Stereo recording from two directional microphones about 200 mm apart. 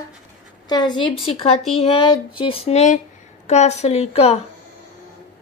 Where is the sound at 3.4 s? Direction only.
35° left (ahead or behind).